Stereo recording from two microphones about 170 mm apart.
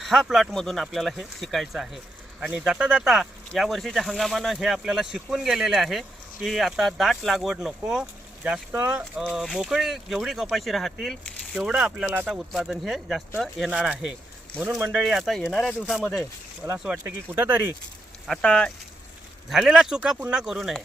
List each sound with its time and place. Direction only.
0.0 s speech: centre (ahead or behind); by 15.0 s 15° right (ahead or behind)
15.0 s speech: centre (ahead or behind)
18.3 s speech: 5° left (ahead or behind)